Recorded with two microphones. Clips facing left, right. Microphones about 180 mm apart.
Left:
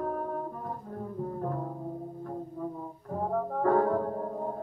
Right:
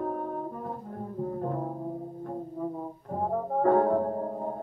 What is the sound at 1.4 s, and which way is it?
Brass instrument, 35° right (ahead or behind).